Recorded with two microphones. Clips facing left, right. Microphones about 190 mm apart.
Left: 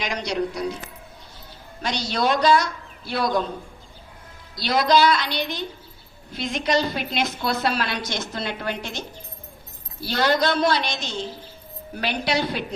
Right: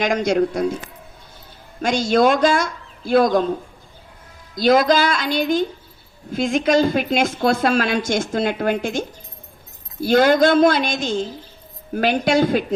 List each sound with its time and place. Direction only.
0.0 s a woman's voice: 50° right (ahead or behind)
1.8 s a woman's voice: 50° right (ahead or behind)
4.5 s a woman's voice: 50° right (ahead or behind)